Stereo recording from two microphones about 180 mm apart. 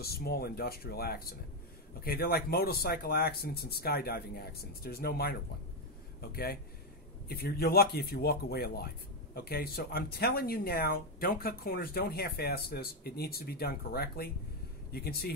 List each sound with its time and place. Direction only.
0.0 s speech: 60° left (ahead or behind)